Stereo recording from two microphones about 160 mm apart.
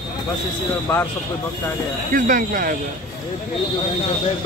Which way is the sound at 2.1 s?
60° right (ahead or behind).